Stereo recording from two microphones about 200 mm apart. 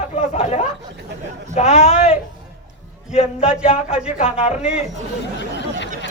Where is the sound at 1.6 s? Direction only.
30° left (ahead or behind).